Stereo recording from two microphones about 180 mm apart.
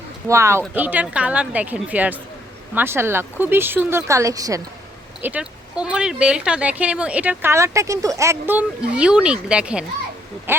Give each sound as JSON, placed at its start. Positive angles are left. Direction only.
{"t": 0.3, "sound": "speech", "side_deg": -15}
{"t": 5.2, "sound": "speech", "side_deg": -5}